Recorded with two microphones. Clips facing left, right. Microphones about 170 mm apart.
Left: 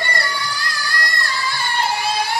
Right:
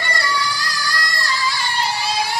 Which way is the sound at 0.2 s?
60° left (ahead or behind).